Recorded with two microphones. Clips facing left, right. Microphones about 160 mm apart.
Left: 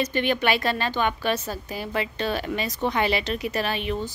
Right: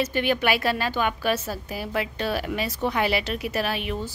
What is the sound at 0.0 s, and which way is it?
A woman's voice, 5° right (ahead or behind).